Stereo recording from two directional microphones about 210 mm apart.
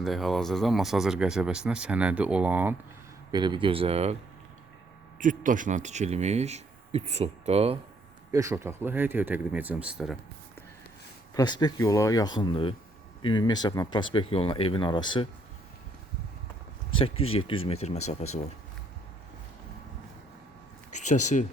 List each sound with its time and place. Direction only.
0.0 s speech: centre (ahead or behind)
3.3 s speech: 20° right (ahead or behind)
8.3 s speech: 15° right (ahead or behind)
11.3 s speech: 20° left (ahead or behind)
17.0 s speech: 25° left (ahead or behind)
20.9 s speech: 35° left (ahead or behind)